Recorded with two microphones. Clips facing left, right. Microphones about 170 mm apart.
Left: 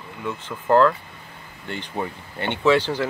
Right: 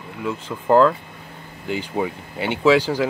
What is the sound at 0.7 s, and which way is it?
Speech, 10° right (ahead or behind).